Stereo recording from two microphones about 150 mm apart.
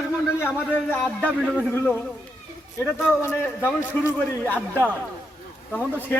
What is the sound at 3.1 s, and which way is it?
Speech, 15° left (ahead or behind).